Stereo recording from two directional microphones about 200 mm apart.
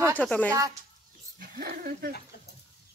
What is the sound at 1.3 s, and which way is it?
Speech, 45° right (ahead or behind).